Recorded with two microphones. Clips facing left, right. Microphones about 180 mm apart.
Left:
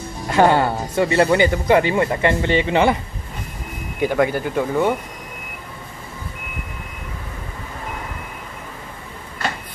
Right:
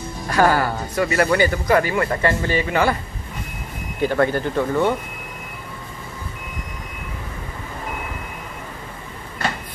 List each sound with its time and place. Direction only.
0.3 s speech: 25° left (ahead or behind)
4.0 s speech: 10° left (ahead or behind)